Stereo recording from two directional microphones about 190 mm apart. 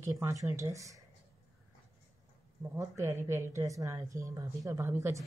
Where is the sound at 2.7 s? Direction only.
15° right (ahead or behind).